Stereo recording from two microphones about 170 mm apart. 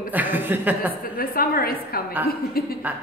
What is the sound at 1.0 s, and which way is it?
A woman's voice, 60° left (ahead or behind).